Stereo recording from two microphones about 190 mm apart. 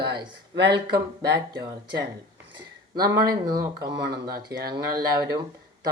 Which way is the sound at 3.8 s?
60° right (ahead or behind).